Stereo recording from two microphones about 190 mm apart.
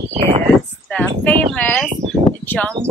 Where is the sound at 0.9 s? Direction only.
5° left (ahead or behind).